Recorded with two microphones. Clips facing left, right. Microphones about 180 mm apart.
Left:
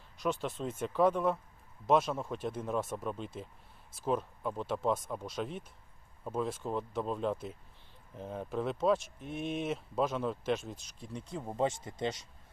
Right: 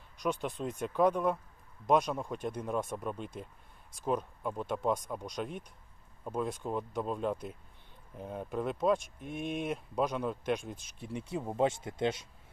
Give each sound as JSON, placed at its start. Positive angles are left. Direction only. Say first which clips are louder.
{"t": 0.2, "sound": "speech", "louder": "even", "side_deg": 0}
{"t": 9.0, "sound": "speech", "louder": "even", "side_deg": -50}
{"t": 9.6, "sound": "speech", "louder": "even", "side_deg": 0}
{"t": 11.0, "sound": "speech", "louder": "right 4 dB", "side_deg": -10}